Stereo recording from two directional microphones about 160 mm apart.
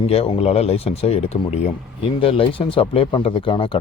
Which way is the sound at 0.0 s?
35° left (ahead or behind).